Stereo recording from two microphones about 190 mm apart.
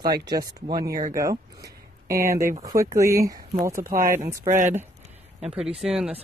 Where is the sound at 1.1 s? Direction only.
15° right (ahead or behind).